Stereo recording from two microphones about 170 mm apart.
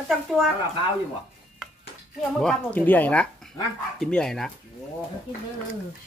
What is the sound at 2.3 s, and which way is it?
Speech, 5° left (ahead or behind).